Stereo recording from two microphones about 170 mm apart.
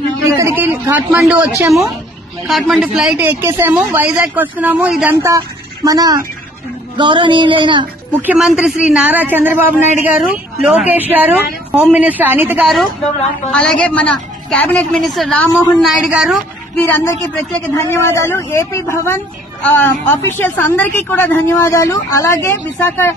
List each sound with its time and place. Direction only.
0.2 s speech: 15° right (ahead or behind)
5.9 s a sound: 20° right (ahead or behind)
8.2 s a woman's voice: 5° right (ahead or behind)
16.7 s a woman's voice: 10° left (ahead or behind)